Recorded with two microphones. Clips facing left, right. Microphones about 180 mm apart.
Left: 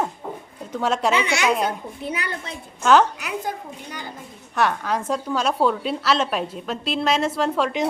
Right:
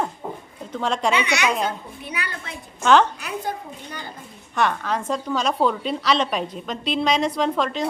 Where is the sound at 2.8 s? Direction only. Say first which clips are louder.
Even; 10° left (ahead or behind).